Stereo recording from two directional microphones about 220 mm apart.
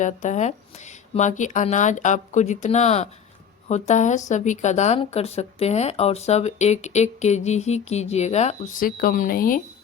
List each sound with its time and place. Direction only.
0.0 s speech: 35° left (ahead or behind)